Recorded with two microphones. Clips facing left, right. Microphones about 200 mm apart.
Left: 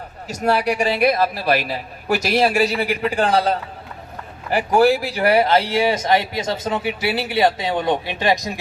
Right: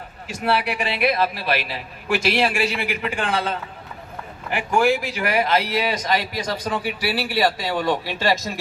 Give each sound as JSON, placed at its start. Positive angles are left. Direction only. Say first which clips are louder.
{"t": 0.3, "sound": "a man's voice", "louder": "left 4 dB", "side_deg": 40}